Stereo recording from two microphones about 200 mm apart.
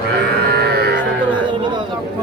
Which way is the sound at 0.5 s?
50° right (ahead or behind).